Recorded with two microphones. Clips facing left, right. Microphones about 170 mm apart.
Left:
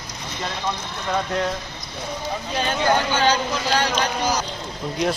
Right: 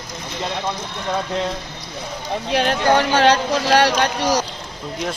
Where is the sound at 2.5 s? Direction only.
75° right (ahead or behind).